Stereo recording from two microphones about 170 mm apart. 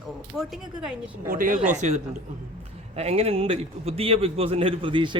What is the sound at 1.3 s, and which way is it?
A man's voice, 55° right (ahead or behind).